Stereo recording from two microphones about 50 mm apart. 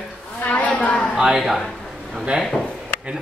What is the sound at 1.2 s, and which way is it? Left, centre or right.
Speech, centre.